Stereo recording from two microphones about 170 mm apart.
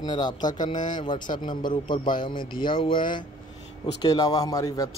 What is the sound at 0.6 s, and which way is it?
Speech, 50° left (ahead or behind).